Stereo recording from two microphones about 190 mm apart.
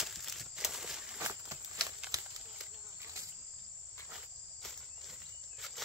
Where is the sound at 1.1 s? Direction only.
15° right (ahead or behind).